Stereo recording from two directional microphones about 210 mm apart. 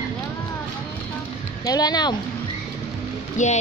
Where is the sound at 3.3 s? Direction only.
35° left (ahead or behind).